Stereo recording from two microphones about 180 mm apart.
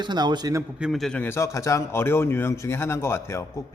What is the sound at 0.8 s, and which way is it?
A man's voice, centre (ahead or behind).